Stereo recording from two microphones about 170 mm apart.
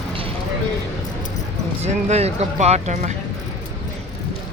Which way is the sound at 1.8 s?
40° right (ahead or behind).